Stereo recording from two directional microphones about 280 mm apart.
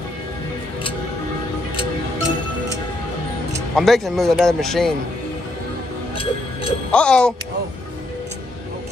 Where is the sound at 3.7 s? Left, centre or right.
Centre.